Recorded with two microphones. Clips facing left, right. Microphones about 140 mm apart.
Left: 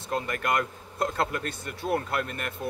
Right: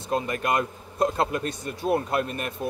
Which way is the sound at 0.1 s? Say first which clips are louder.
Right 3 dB; 20° right (ahead or behind).